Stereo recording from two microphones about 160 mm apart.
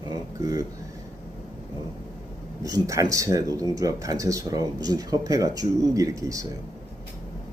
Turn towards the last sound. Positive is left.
turn(degrees=-20)  # may be behind; listen again after turning